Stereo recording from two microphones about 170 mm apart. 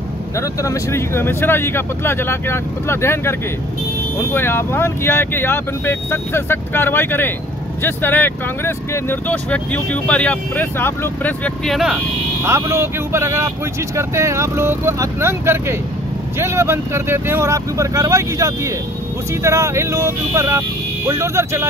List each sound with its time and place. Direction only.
0.4 s speech: 20° left (ahead or behind); by 12.0 s centre (ahead or behind)
12.4 s speech: 15° right (ahead or behind)